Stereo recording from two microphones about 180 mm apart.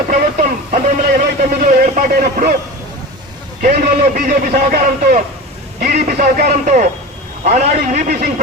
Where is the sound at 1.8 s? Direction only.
50° right (ahead or behind).